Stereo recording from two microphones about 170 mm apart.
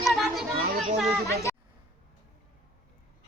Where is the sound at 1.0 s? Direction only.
Centre (ahead or behind).